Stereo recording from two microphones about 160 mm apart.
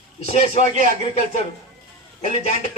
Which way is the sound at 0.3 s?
40° left (ahead or behind).